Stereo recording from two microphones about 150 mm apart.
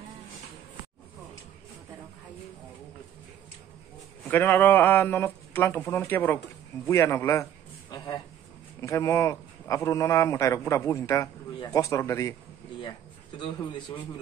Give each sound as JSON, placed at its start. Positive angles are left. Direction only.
{"t": 4.3, "sound": "a man's voice", "side_deg": 15}
{"t": 8.8, "sound": "a man's voice", "side_deg": 20}
{"t": 13.4, "sound": "a man's voice", "side_deg": 30}